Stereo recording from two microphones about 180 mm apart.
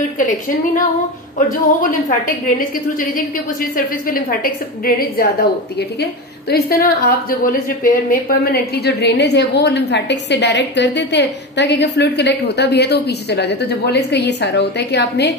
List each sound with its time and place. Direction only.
0.2 s a woman's voice: 45° left (ahead or behind)
3.7 s a woman's voice: 50° left (ahead or behind)
6.5 s a woman's voice: 55° left (ahead or behind); by 15.3 s 70° left (ahead or behind)